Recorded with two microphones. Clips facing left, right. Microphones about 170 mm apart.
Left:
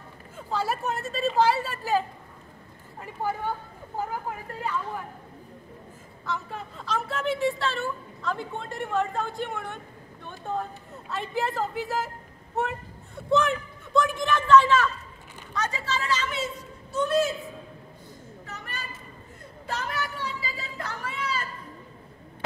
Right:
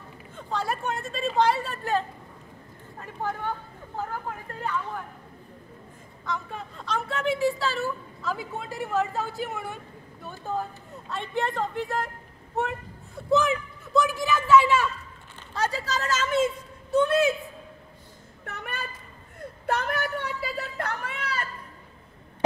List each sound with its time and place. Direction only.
0.4 s a woman's voice: 5° left (ahead or behind)
6.2 s a woman's voice: centre (ahead or behind)
15.5 s a woman's voice: 35° right (ahead or behind); by 17.3 s 60° right (ahead or behind)
18.4 s a sound: 60° right (ahead or behind)
19.6 s a woman's voice: 55° right (ahead or behind)